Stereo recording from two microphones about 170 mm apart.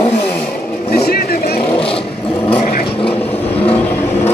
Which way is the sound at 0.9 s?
65° left (ahead or behind).